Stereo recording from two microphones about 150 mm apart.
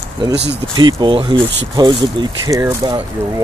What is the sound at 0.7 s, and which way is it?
Speech, 30° right (ahead or behind).